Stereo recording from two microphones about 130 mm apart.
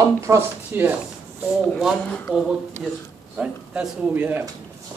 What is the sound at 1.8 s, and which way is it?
Speech, centre (ahead or behind).